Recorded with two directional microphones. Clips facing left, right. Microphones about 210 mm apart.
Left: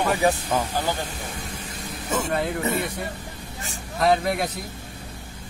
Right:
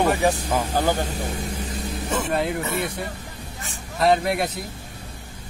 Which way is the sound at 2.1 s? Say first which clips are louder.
Right 1 dB; centre (ahead or behind).